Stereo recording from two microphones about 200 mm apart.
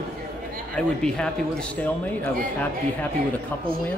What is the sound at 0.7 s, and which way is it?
Speech, 5° left (ahead or behind).